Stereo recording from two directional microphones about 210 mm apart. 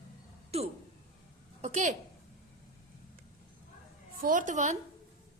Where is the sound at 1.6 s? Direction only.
35° right (ahead or behind).